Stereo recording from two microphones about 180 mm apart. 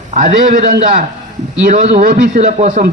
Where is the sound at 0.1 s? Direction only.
40° right (ahead or behind).